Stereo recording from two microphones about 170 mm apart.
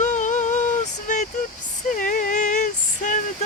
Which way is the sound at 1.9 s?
50° left (ahead or behind).